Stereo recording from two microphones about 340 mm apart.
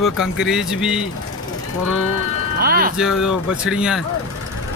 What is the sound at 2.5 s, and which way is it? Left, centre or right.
Speech, right.